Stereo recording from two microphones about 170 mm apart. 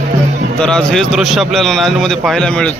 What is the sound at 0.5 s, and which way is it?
A man's voice, 5° left (ahead or behind).